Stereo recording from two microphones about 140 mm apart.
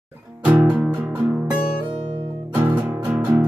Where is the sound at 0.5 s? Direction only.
10° right (ahead or behind).